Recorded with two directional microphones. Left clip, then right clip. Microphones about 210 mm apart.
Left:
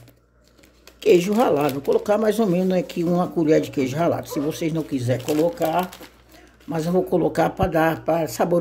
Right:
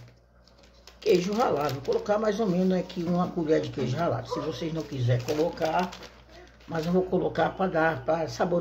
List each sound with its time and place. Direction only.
0.9 s speech: 50° left (ahead or behind)